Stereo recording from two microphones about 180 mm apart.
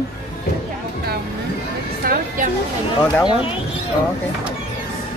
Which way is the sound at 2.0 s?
55° right (ahead or behind).